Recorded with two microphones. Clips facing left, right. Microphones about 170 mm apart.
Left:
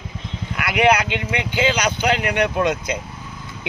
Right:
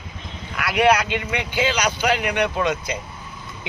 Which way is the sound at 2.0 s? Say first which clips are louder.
Left 1 dB; 15° left (ahead or behind).